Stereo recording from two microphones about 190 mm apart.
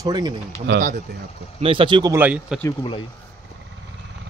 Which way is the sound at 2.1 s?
10° right (ahead or behind).